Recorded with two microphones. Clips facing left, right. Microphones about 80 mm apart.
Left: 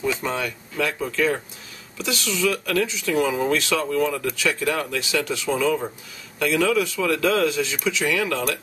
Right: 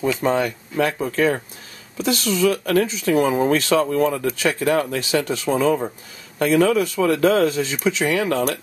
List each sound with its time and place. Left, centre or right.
0.2 s speech: right